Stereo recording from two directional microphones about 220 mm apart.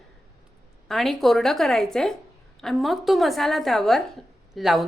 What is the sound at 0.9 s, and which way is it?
A woman's voice, centre (ahead or behind).